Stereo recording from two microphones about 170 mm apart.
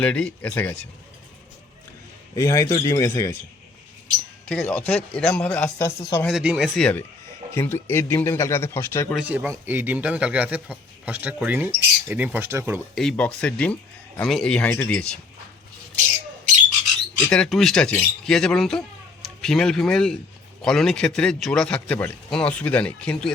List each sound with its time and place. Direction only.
0.0 s speech: 5° left (ahead or behind)
2.3 s speech: 20° left (ahead or behind)
4.4 s speech: 5° left (ahead or behind)
6.2 s a man's voice: 5° right (ahead or behind)
6.7 s a man's voice: 5° left (ahead or behind)
9.1 s speech: 10° right (ahead or behind)
13.0 s a man's voice: 5° left (ahead or behind)
17.2 s a man's voice: 5° left (ahead or behind)